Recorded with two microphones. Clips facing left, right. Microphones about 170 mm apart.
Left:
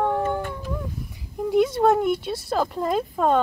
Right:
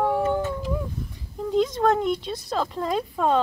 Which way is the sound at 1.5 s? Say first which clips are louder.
Left 2 dB; 10° left (ahead or behind).